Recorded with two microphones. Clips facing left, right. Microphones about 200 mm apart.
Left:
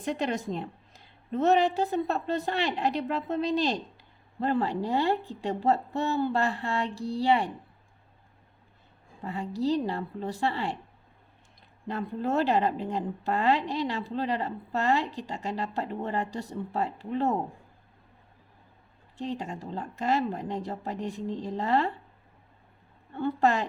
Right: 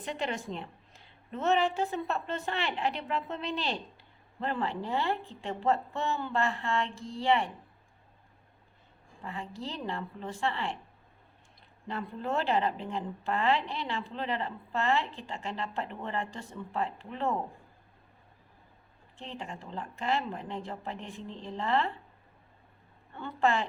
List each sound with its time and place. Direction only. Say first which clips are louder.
0.0 s a woman's voice: left 5 dB; 40° left (ahead or behind)
9.2 s a woman's voice: left 10 dB; 40° left (ahead or behind)
11.9 s a woman's voice: left 5 dB; 40° left (ahead or behind)
19.1 s a woman's voice: left 8 dB; 40° left (ahead or behind)
23.1 s a woman's voice: left 4 dB; 40° left (ahead or behind)